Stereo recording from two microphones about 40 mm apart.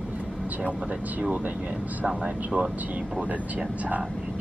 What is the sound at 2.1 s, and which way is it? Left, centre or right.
Speech, right.